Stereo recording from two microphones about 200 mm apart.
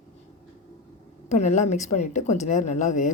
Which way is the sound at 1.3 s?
35° left (ahead or behind).